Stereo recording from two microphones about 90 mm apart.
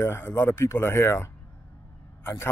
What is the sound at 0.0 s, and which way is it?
A man's voice, 25° left (ahead or behind).